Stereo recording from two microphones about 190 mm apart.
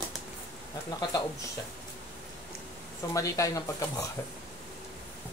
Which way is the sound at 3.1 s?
15° left (ahead or behind).